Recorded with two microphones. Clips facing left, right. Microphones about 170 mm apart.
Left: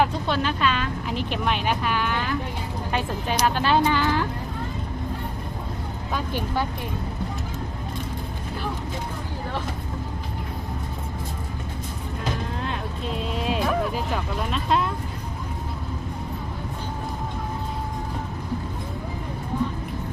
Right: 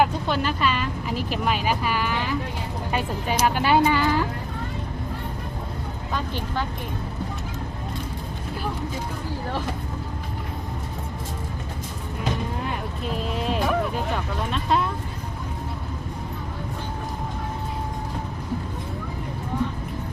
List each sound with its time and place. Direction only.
0.0 s speech: 5° right (ahead or behind)
6.1 s speech: 10° left (ahead or behind)
12.6 s a sound: centre (ahead or behind)
14.5 s speech: centre (ahead or behind)